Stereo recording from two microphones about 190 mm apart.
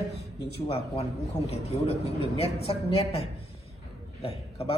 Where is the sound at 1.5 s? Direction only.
35° left (ahead or behind).